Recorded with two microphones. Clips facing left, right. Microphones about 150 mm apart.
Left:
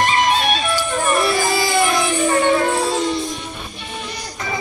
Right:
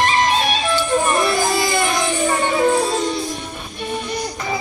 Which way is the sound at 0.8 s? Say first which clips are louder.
Right 3 dB; 5° left (ahead or behind).